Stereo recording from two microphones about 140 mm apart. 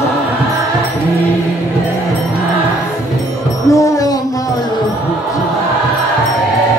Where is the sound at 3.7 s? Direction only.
25° left (ahead or behind).